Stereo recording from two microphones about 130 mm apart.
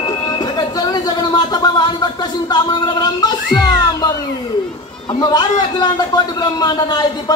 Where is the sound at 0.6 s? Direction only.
30° left (ahead or behind).